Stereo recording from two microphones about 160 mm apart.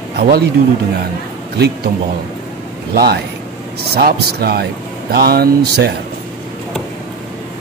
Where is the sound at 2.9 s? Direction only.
80° right.